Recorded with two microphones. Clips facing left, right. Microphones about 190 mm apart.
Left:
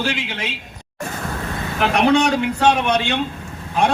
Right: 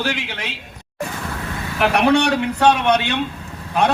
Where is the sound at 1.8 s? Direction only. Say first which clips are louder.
Even; 65° right (ahead or behind).